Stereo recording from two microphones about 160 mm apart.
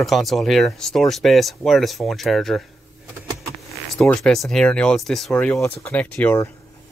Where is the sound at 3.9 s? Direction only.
5° left (ahead or behind).